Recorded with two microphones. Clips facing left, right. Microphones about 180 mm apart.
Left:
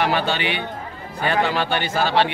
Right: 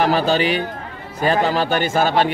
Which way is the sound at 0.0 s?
40° right (ahead or behind).